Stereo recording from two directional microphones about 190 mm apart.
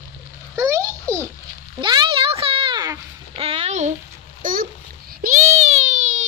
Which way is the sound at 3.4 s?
35° right (ahead or behind).